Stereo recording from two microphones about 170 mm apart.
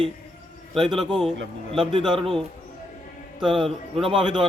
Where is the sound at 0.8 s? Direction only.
Centre (ahead or behind).